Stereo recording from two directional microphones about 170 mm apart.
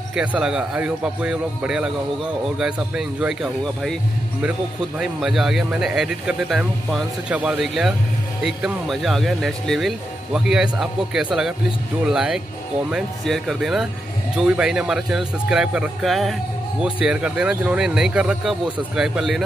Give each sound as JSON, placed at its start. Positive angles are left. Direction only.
{"t": 0.1, "sound": "speech", "side_deg": -5}
{"t": 4.4, "sound": "speech", "side_deg": -10}